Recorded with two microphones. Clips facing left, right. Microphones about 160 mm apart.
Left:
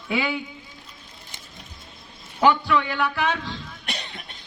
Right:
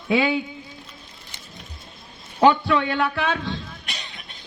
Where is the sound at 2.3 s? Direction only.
30° right (ahead or behind).